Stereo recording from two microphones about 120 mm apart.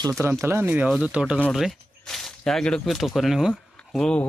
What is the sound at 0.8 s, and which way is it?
Speech, 5° right (ahead or behind).